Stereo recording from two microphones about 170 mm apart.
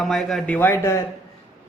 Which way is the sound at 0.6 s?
10° left (ahead or behind).